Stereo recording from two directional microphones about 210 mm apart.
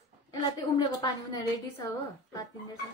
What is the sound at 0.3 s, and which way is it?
A woman's voice, 20° left (ahead or behind).